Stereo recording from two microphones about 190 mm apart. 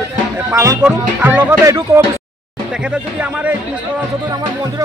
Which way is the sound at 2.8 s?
5° right (ahead or behind).